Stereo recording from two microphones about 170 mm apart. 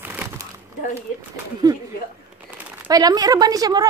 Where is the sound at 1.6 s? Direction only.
25° right (ahead or behind).